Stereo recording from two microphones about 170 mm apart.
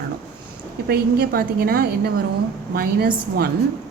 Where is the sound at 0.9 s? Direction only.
65° right (ahead or behind).